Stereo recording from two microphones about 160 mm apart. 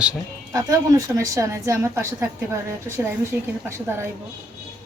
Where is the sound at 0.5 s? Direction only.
20° right (ahead or behind).